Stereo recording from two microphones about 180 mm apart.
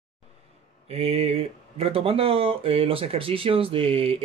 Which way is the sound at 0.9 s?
35° right (ahead or behind).